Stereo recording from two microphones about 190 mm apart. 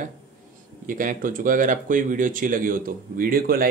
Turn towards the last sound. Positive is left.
turn(degrees=-50)  # may be behind; listen again after turning